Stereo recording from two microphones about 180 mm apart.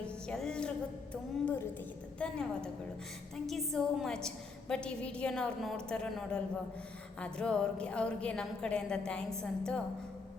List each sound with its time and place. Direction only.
0.0 s music: 5° left (ahead or behind)
1.1 s a woman's voice: 10° left (ahead or behind)